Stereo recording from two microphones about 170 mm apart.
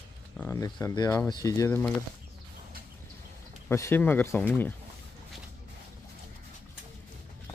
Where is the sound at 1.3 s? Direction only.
20° left (ahead or behind).